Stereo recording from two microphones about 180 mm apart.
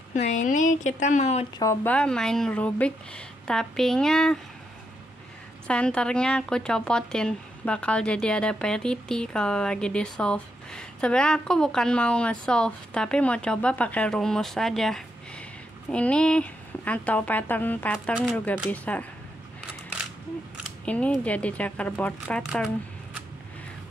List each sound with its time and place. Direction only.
0.1 s speech: 40° left (ahead or behind)
1.6 s speech: 15° left (ahead or behind)
5.7 s speech: 5° left (ahead or behind)
20.8 s speech: 5° left (ahead or behind)